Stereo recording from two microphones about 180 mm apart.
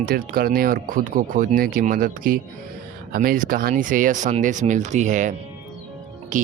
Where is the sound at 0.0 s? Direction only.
55° right (ahead or behind).